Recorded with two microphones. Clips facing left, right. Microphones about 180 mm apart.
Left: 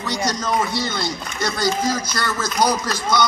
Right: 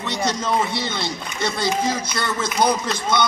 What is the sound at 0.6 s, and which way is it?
A man's voice, 25° right (ahead or behind).